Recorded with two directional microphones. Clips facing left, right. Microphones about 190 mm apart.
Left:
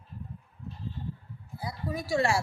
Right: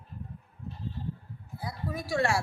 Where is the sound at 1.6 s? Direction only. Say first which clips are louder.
Left 1 dB; centre (ahead or behind).